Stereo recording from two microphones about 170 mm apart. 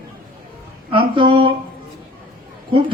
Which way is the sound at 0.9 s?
30° right (ahead or behind).